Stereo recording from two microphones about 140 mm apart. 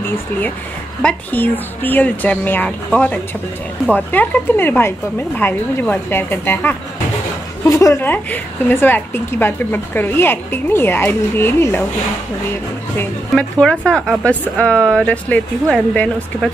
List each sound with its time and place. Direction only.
1.0 s a woman's voice: 15° left (ahead or behind)
13.3 s a woman's voice: 5° left (ahead or behind)